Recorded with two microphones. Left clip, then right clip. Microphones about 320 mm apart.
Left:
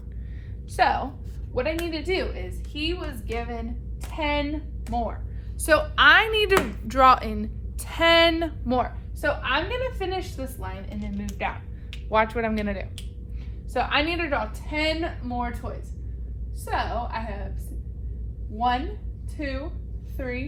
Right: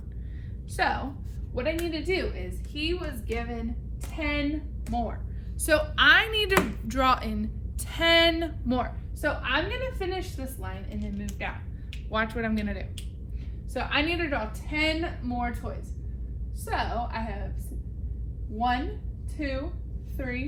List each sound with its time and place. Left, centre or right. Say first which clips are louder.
0.8 s speech: left 5 dB; centre
18.5 s a woman's voice: left 3 dB; centre